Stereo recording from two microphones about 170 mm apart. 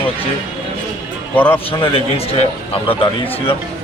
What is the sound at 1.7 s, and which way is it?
Speech, 30° left (ahead or behind).